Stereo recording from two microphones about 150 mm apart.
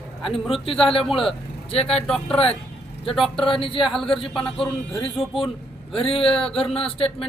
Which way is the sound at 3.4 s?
35° left (ahead or behind).